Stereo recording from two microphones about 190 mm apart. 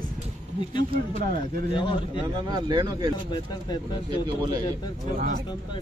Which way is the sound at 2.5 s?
20° right (ahead or behind).